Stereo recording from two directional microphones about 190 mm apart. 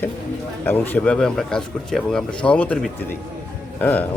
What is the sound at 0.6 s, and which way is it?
A man's voice, 10° left (ahead or behind).